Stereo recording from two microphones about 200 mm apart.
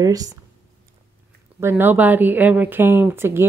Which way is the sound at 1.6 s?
10° right (ahead or behind).